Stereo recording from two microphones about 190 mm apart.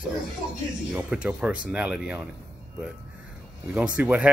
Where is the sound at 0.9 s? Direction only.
5° right (ahead or behind).